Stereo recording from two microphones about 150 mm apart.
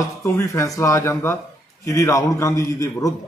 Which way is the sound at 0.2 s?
20° left (ahead or behind).